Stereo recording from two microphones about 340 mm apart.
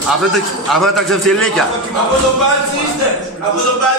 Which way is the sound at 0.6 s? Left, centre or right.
Centre.